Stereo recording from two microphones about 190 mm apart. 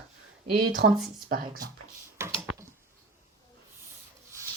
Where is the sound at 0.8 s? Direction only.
50° right (ahead or behind).